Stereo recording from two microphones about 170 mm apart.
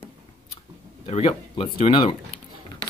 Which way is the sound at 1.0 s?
35° left (ahead or behind).